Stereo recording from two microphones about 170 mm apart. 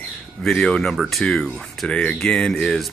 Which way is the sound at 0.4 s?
5° left (ahead or behind).